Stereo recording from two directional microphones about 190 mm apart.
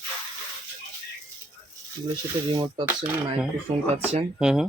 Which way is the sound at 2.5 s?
25° right (ahead or behind).